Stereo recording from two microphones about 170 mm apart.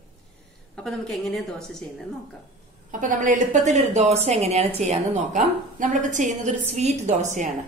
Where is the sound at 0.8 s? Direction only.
Centre (ahead or behind).